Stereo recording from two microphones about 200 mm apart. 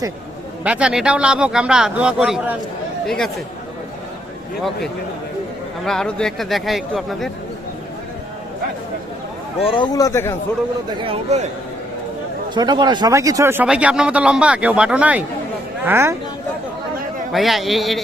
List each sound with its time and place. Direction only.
0.6 s speech: 5° right (ahead or behind)
5.8 s speech: 5° left (ahead or behind)
9.7 s speech: 20° left (ahead or behind)
11.0 s speech: 30° right (ahead or behind)
12.5 s speech: 20° right (ahead or behind)
17.3 s speech: centre (ahead or behind)